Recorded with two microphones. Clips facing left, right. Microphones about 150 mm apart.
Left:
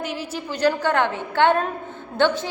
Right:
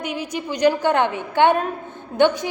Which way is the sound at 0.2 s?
15° right (ahead or behind).